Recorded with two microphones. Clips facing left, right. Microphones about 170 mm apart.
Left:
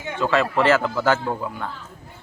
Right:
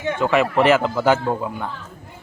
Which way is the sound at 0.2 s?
15° right (ahead or behind).